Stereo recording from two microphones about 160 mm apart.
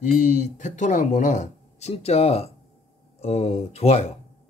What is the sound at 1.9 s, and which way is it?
A man's voice, 40° left (ahead or behind).